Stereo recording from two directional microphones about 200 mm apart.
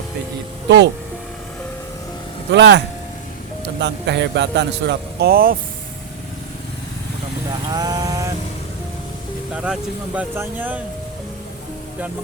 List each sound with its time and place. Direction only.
2.5 s speech: 60° right (ahead or behind)
7.7 s a sound: 20° right (ahead or behind)
9.5 s speech: 5° right (ahead or behind)